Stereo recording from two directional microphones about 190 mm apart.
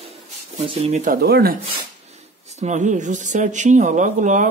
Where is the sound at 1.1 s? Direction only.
50° right (ahead or behind).